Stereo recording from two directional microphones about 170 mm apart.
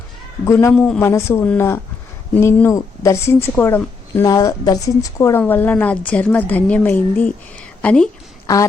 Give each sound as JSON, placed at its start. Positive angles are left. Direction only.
{"t": 0.4, "sound": "a woman's voice", "side_deg": 15}
{"t": 0.7, "sound": "a woman's voice", "side_deg": 5}